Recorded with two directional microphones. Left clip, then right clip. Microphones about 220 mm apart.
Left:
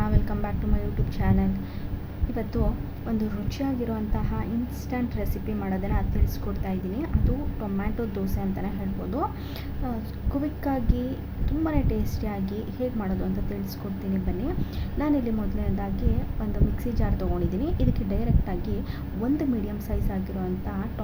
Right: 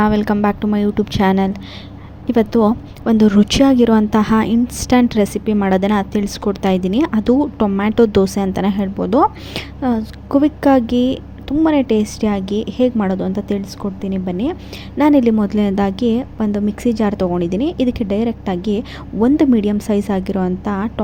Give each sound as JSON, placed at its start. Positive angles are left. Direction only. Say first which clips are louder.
{"t": 0.0, "sound": "a woman's voice", "louder": "right 16 dB", "side_deg": -35}
{"t": 3.1, "sound": "a woman's voice", "louder": "right 18 dB", "side_deg": -35}
{"t": 14.9, "sound": "a woman's voice", "louder": "right 14 dB", "side_deg": -35}